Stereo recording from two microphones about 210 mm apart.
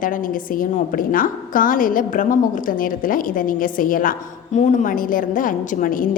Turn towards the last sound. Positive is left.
turn(degrees=40)  # may be behind; listen again after turning